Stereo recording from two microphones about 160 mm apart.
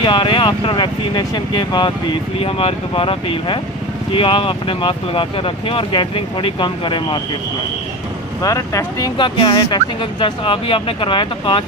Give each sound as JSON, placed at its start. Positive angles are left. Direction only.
{"t": 0.0, "sound": "speech", "side_deg": 30}
{"t": 8.4, "sound": "speech", "side_deg": 20}